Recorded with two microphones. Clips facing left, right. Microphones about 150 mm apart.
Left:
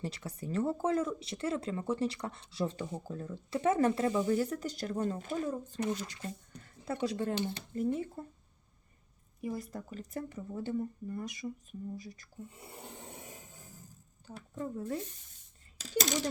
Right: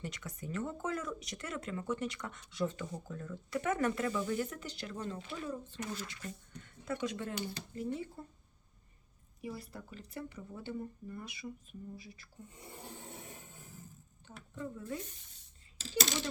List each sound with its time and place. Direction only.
0.0 s speech: 30° left (ahead or behind)
8.2 s speech: 45° left (ahead or behind)
9.4 s speech: 45° left (ahead or behind)
14.3 s speech: 40° left (ahead or behind)